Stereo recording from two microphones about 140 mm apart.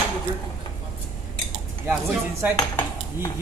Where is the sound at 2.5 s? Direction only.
25° left (ahead or behind).